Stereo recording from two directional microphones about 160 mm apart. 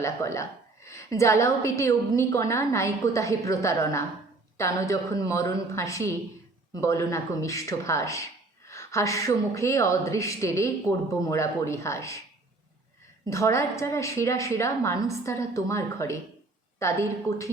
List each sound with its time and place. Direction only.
0.0 s speech: 20° left (ahead or behind)
13.3 s a woman's voice: 20° left (ahead or behind)